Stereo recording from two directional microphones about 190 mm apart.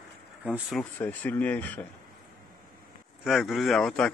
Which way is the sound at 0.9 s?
10° left (ahead or behind).